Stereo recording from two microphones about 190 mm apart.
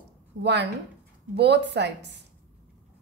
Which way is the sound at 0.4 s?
65° right (ahead or behind).